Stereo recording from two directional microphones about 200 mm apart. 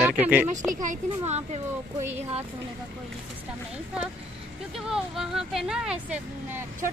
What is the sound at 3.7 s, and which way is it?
Speech, 5° right (ahead or behind).